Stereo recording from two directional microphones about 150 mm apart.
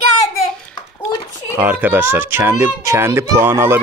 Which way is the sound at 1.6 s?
10° right (ahead or behind).